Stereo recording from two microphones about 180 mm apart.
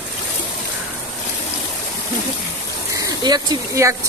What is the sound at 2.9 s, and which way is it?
Speech, 20° right (ahead or behind).